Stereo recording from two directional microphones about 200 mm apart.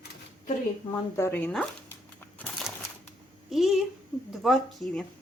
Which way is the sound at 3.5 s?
Centre (ahead or behind).